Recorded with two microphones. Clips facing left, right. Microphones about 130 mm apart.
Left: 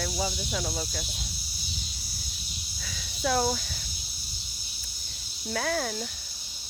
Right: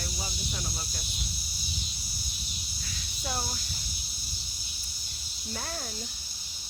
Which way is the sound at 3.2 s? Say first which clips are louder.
Left 10 dB; 90° left.